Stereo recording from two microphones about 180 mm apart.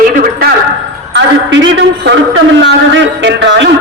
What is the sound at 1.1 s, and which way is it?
A man's voice, 90° right.